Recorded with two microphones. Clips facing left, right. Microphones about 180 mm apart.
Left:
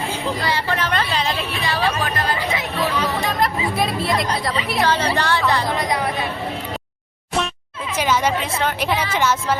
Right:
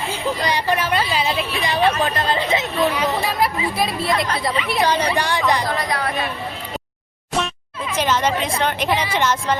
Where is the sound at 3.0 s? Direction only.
5° right (ahead or behind).